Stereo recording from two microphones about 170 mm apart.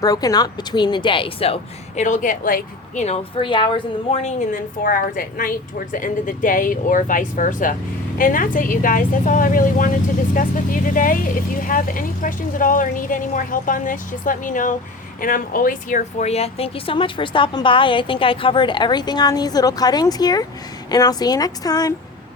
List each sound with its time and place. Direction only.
0.0 s speech: 20° left (ahead or behind)
2.0 s a woman's voice: 45° left (ahead or behind)
3.0 s a woman's voice: 35° left (ahead or behind); by 9.9 s 50° left (ahead or behind)
10.9 s a woman's voice: 55° left (ahead or behind); by 21.9 s 20° left (ahead or behind)